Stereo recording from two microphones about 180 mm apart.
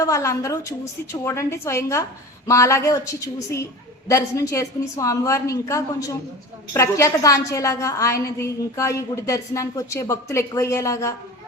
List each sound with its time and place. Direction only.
0.0 s a woman's voice: 15° left (ahead or behind)